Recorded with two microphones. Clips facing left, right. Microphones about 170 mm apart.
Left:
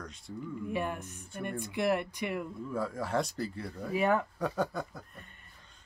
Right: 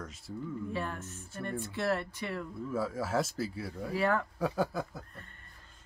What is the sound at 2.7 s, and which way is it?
Speech, 5° right (ahead or behind).